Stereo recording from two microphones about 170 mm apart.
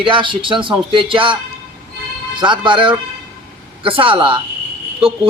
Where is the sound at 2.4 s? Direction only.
30° right (ahead or behind).